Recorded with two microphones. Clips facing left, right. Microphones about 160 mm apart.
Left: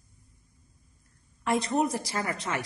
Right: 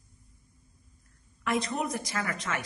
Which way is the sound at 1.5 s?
30° left (ahead or behind).